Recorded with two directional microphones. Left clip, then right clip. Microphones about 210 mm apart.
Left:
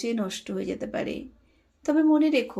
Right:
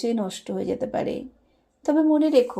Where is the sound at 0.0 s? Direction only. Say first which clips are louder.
Right 3 dB; 10° right (ahead or behind).